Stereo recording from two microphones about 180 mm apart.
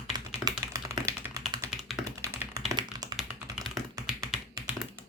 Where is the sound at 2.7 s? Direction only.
25° right (ahead or behind).